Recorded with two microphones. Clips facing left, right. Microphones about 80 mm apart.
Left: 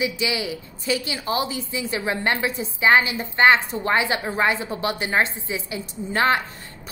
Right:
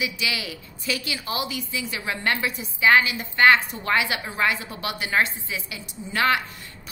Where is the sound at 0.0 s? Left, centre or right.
Left.